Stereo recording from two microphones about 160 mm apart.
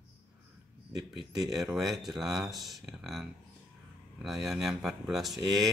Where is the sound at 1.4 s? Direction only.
Centre (ahead or behind).